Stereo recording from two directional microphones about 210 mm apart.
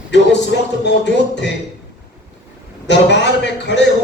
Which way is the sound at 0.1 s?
55° left (ahead or behind).